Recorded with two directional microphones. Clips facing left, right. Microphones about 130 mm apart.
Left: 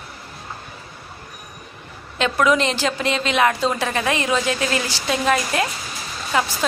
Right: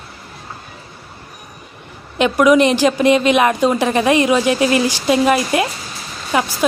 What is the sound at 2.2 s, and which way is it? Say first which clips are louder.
A woman's voice: right 7 dB; 15° right (ahead or behind).